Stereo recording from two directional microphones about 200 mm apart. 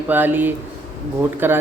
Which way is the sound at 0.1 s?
10° right (ahead or behind).